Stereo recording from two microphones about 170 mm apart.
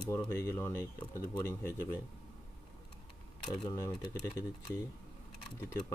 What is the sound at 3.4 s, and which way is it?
Speech, 25° left (ahead or behind).